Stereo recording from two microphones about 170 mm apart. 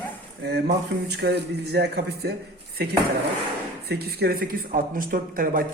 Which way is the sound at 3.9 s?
70° right (ahead or behind).